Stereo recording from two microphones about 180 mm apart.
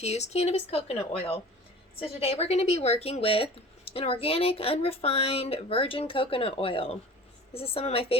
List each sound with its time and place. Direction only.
0.0 s speech: 35° left (ahead or behind)